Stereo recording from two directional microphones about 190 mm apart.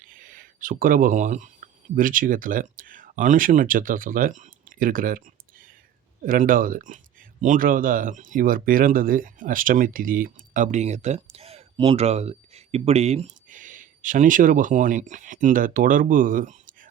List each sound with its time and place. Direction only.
0.0 s speech: 45° right (ahead or behind)